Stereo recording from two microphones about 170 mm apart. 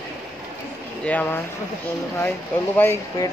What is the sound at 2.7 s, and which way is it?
Speech, 15° left (ahead or behind).